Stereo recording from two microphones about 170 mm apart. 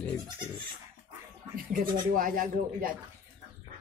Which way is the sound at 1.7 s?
55° right (ahead or behind).